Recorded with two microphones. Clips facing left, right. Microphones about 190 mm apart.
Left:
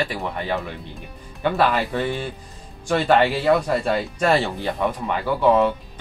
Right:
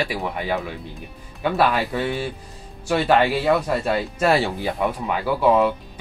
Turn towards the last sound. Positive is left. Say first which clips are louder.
# even
turn(degrees=-5)  # may be behind; listen again after turning